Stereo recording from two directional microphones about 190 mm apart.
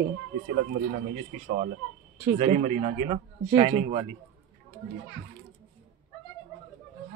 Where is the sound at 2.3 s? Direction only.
35° right (ahead or behind).